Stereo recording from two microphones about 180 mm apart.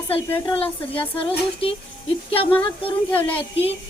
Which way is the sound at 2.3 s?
30° left (ahead or behind).